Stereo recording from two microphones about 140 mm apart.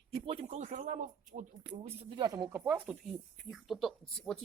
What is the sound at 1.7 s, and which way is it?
Speech, 35° right (ahead or behind).